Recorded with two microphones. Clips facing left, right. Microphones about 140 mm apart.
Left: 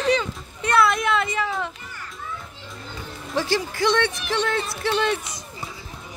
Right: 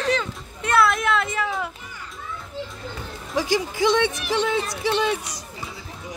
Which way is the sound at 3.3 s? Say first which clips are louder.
Right 1 dB; 15° right (ahead or behind).